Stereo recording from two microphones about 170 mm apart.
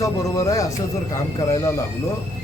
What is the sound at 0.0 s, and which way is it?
A man's voice, 20° left (ahead or behind).